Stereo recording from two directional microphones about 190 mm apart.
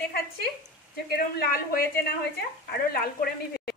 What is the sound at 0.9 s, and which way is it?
Speech, 55° left (ahead or behind).